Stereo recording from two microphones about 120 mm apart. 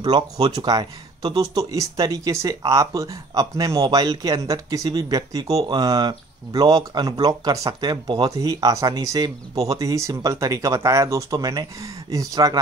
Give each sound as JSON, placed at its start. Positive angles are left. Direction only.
{"t": 0.0, "sound": "speech", "side_deg": -35}